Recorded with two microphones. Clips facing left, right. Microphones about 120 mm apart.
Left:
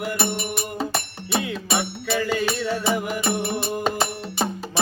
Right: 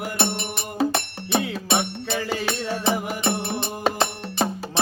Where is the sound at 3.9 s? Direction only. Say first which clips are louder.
Right 1 dB; 10° left (ahead or behind).